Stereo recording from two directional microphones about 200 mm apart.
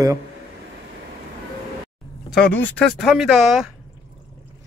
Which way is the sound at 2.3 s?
5° left (ahead or behind).